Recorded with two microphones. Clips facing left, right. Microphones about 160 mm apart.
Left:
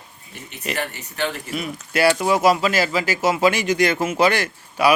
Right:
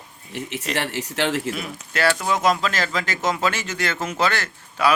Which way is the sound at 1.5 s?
10° left (ahead or behind).